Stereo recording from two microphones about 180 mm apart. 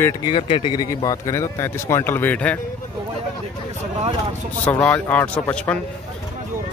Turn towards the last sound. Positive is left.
turn(degrees=5)  # may be behind; listen again after turning